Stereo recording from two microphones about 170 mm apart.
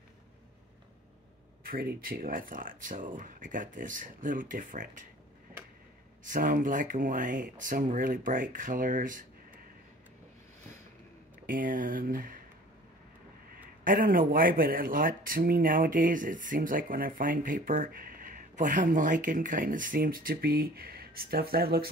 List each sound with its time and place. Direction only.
1.7 s speech: 60° right (ahead or behind)
6.2 s speech: 50° right (ahead or behind)
11.4 s speech: 55° right (ahead or behind)
13.8 s speech: 55° right (ahead or behind)